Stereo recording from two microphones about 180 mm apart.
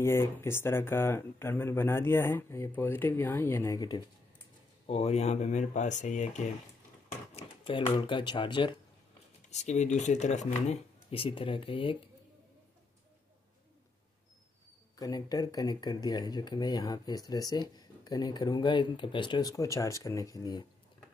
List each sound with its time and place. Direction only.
0.0 s speech: 15° left (ahead or behind)
4.8 s speech: 35° left (ahead or behind)
7.3 s speech: 30° left (ahead or behind)
9.5 s speech: 40° left (ahead or behind)
15.0 s speech: 20° left (ahead or behind)